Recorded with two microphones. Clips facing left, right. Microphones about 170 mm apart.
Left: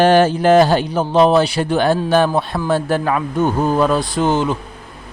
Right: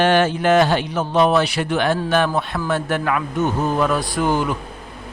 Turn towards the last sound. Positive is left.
turn(degrees=25)  # may be behind; listen again after turning